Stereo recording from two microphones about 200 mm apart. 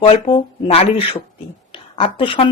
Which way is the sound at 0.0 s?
25° left (ahead or behind).